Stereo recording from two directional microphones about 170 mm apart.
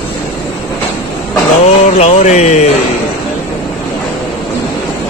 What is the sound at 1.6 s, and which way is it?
Speech, 40° left (ahead or behind).